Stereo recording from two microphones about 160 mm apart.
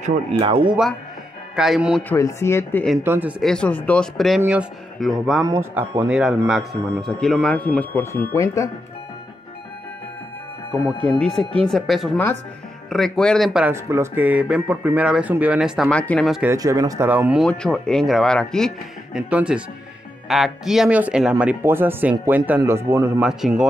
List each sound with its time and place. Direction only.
0.3 s speech: 30° right (ahead or behind)
1.5 s a man's voice: 5° right (ahead or behind)
2.0 s speech: 15° left (ahead or behind)
3.0 s speech: 10° right (ahead or behind)
3.4 s a man's voice: 5° left (ahead or behind)
5.4 s a man's voice: 20° right (ahead or behind); by 8.6 s 15° left (ahead or behind)
11.0 s a man's voice: 10° left (ahead or behind)
15.9 s a man's voice: 5° left (ahead or behind)
16.4 s speech: 20° right (ahead or behind)
17.1 s speech: 10° right (ahead or behind)
17.5 s a man's voice: 5° left (ahead or behind)
19.1 s a man's voice: 5° right (ahead or behind)
23.2 s a man's voice: 5° right (ahead or behind)